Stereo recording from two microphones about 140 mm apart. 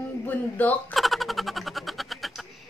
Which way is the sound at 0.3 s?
10° left (ahead or behind).